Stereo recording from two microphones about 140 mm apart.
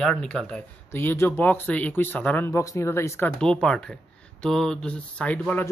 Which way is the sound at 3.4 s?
5° left (ahead or behind).